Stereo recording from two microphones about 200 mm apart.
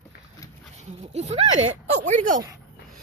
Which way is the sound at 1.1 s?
35° right (ahead or behind).